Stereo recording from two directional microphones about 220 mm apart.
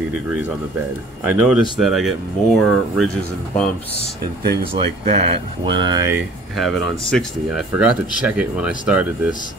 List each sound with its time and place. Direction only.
1.2 s speech: 5° right (ahead or behind)
4.7 s speech: 30° right (ahead or behind)
6.5 s speech: centre (ahead or behind)